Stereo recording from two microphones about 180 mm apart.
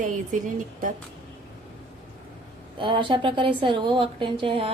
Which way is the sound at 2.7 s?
30° right (ahead or behind).